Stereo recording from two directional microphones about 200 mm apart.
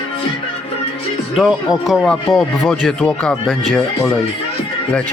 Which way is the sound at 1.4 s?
Centre (ahead or behind).